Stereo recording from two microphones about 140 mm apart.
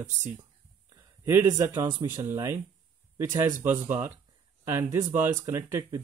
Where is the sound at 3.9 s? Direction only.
15° right (ahead or behind).